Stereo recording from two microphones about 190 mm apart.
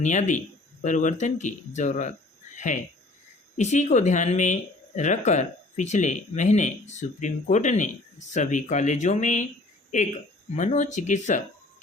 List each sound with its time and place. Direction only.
0.0 s speech: 40° left (ahead or behind)
3.6 s speech: 40° left (ahead or behind)
10.5 s speech: 40° left (ahead or behind)